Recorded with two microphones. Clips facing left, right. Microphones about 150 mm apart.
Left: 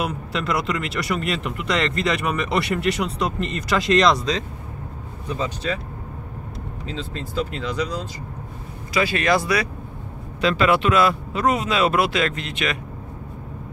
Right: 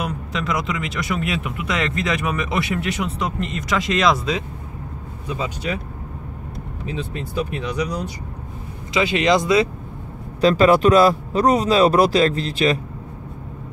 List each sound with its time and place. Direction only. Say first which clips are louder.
0.0 s speech: even; 5° left (ahead or behind); by 5.8 s 10° right (ahead or behind)
6.9 s speech: right 3 dB; 15° right (ahead or behind)
10.4 s speech: right 5 dB; 40° right (ahead or behind)